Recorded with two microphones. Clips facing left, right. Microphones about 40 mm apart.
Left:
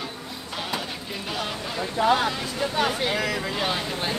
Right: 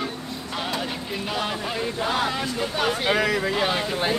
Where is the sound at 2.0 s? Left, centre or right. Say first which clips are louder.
Left 6 dB; centre.